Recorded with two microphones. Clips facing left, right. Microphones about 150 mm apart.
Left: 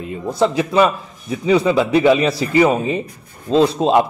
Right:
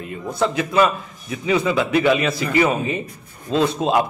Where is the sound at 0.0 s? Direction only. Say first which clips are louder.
Left 4 dB; 25° left (ahead or behind).